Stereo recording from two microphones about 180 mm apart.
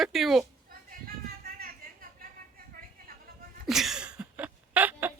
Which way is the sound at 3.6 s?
Centre (ahead or behind).